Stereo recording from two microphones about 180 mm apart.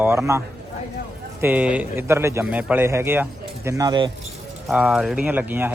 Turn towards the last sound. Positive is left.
turn(degrees=-10)  # may be behind; listen again after turning